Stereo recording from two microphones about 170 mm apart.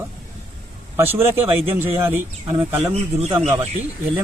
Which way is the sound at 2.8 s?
35° right (ahead or behind).